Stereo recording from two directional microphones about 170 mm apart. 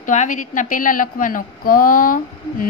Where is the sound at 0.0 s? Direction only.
45° left (ahead or behind).